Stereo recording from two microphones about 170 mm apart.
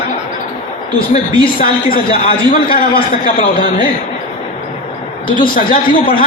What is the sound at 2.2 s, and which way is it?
Speech, 35° left (ahead or behind).